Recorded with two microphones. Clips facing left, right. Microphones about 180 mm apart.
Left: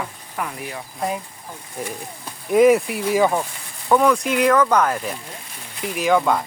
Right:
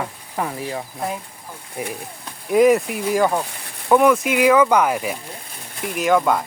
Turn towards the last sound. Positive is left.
turn(degrees=0)  # may be behind; listen again after turning